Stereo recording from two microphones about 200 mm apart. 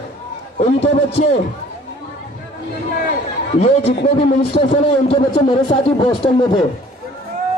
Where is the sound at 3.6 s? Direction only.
30° left (ahead or behind).